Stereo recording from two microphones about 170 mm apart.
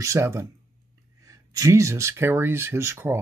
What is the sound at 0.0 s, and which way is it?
Speech, 15° right (ahead or behind).